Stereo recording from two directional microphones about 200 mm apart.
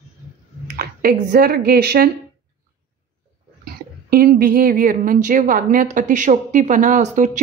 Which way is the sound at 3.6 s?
50° right (ahead or behind).